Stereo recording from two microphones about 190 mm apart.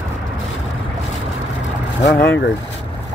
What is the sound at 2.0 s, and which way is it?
Vehicle, 65° left (ahead or behind).